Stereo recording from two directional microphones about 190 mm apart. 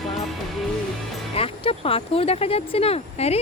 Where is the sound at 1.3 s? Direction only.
30° left (ahead or behind).